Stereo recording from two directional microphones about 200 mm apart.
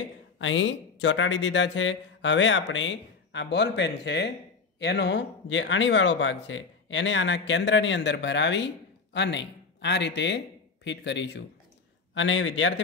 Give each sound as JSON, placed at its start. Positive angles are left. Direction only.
{"t": 0.4, "sound": "speech", "side_deg": 70}